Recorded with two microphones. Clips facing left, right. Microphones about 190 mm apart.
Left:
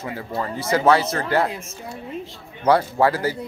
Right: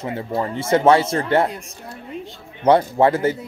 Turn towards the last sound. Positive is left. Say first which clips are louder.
# right 3 dB
turn(degrees=-25)  # may be behind; listen again after turning